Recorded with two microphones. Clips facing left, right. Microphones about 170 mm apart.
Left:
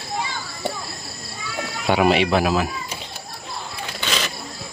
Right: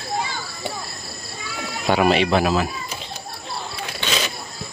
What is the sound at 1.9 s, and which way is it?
Speech, 10° left (ahead or behind).